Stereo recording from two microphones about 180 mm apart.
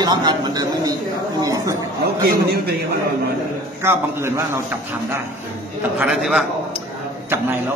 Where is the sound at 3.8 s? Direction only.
15° right (ahead or behind).